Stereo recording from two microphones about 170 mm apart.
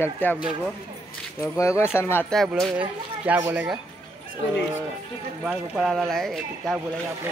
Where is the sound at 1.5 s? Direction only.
15° left (ahead or behind).